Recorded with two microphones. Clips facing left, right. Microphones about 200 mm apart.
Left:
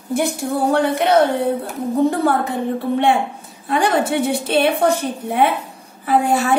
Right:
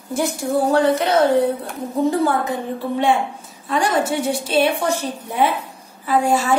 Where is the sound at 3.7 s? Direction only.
60° left (ahead or behind).